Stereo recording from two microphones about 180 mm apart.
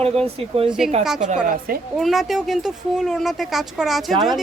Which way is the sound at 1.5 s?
55° right (ahead or behind).